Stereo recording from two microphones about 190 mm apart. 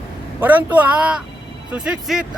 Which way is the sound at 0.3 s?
10° right (ahead or behind).